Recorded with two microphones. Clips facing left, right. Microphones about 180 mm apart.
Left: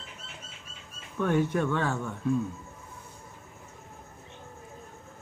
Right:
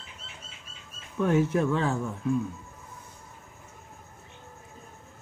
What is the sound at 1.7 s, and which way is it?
Speech, 30° right (ahead or behind).